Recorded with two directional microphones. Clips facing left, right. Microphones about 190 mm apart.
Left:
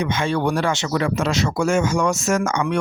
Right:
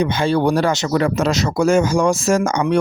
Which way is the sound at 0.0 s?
35° right (ahead or behind).